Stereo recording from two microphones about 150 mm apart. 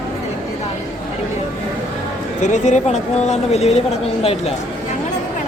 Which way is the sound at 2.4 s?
50° left (ahead or behind).